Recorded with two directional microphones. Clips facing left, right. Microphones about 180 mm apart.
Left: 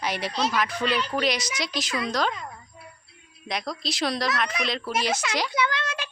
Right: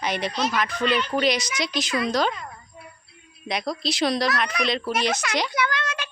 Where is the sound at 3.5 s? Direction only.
Centre (ahead or behind).